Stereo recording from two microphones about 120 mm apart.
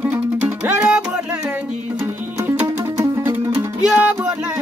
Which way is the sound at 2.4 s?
20° right (ahead or behind).